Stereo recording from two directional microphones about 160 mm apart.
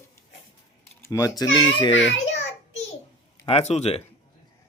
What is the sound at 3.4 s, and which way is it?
Speech, 40° left (ahead or behind).